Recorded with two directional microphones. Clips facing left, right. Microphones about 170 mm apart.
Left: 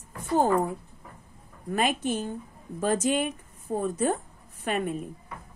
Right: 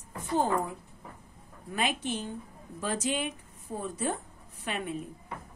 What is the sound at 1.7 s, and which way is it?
A woman's voice, 45° left (ahead or behind).